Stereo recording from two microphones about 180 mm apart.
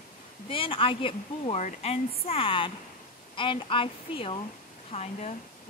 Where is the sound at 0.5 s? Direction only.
30° left (ahead or behind).